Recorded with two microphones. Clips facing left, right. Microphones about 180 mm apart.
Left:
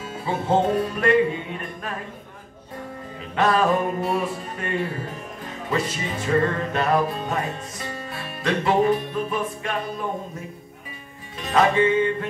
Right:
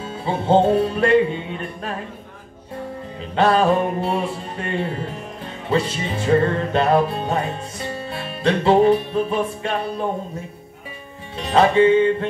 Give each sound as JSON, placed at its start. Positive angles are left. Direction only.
{"t": 0.0, "sound": "music", "side_deg": -30}
{"t": 3.2, "sound": "music", "side_deg": -30}
{"t": 11.3, "sound": "music", "side_deg": -30}